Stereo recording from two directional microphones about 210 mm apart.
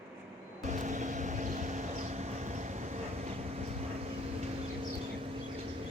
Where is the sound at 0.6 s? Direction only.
35° right (ahead or behind).